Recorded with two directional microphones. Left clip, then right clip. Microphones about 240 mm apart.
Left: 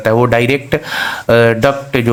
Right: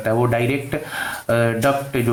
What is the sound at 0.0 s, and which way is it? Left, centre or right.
Speech, left.